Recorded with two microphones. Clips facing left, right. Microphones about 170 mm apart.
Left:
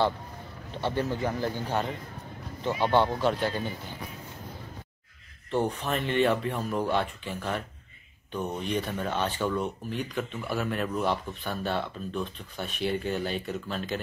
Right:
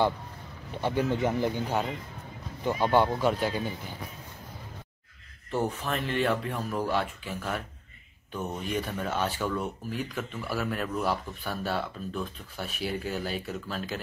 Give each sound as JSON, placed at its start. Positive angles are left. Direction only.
{"t": 0.7, "sound": "speech", "side_deg": -15}
{"t": 2.8, "sound": "speech", "side_deg": -10}
{"t": 5.5, "sound": "speech", "side_deg": -5}